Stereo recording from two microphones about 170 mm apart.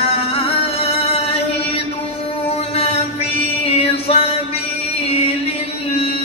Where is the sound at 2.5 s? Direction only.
35° left (ahead or behind).